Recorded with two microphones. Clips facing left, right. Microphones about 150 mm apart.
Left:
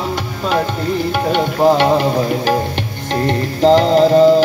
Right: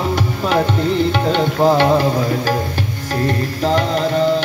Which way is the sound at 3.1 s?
30° left (ahead or behind).